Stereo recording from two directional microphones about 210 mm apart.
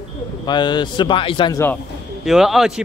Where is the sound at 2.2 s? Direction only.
Centre (ahead or behind).